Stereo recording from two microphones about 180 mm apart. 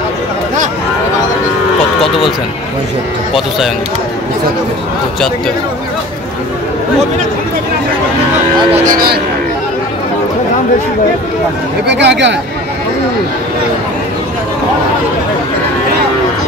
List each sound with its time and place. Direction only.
3.3 s speech: centre (ahead or behind)
8.7 s speech: 50° right (ahead or behind)
11.9 s speech: 75° right (ahead or behind)